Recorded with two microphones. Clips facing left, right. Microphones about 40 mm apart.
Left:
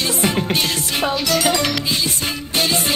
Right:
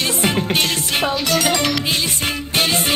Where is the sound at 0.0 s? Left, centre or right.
Right.